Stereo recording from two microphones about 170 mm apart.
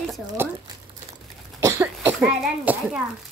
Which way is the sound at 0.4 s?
15° right (ahead or behind).